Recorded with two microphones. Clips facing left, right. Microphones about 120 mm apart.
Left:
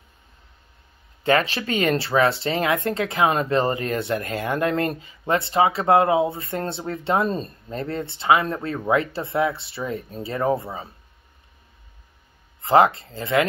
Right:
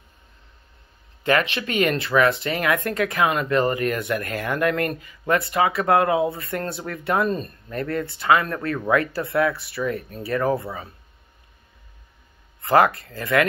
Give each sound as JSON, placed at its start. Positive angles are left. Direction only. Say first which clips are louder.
{"t": 1.2, "sound": "speech", "louder": "left 1 dB", "side_deg": 30}
{"t": 12.6, "sound": "speech", "louder": "left 1 dB", "side_deg": 25}